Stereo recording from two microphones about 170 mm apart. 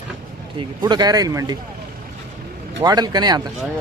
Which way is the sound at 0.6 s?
25° right (ahead or behind).